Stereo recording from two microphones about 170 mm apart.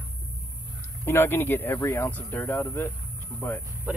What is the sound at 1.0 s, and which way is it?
Speech, 15° left (ahead or behind).